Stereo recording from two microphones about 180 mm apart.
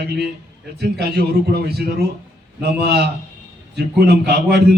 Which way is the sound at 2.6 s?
65° right (ahead or behind).